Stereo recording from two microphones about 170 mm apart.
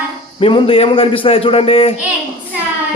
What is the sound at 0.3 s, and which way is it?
Speech, 30° left (ahead or behind).